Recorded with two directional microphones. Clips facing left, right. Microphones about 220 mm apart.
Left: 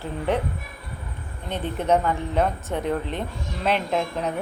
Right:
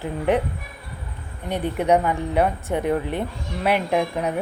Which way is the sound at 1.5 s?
15° right (ahead or behind).